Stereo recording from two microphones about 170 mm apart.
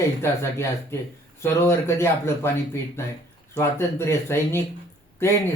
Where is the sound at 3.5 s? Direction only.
15° left (ahead or behind).